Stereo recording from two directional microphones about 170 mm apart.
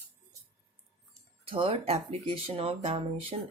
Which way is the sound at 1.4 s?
30° right (ahead or behind).